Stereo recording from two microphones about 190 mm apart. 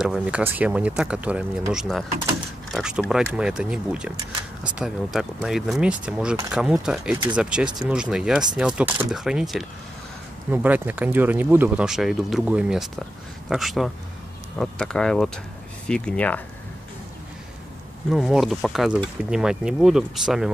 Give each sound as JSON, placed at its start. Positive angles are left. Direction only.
{"t": 0.0, "sound": "speech", "side_deg": -5}
{"t": 4.2, "sound": "speech", "side_deg": -25}
{"t": 4.7, "sound": "speech", "side_deg": -5}
{"t": 18.1, "sound": "speech", "side_deg": 0}